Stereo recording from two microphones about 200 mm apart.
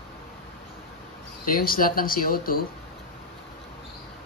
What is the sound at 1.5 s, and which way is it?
Speech, 45° left (ahead or behind).